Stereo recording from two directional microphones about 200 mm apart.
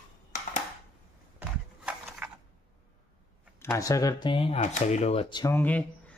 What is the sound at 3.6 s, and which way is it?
Speech, 15° left (ahead or behind).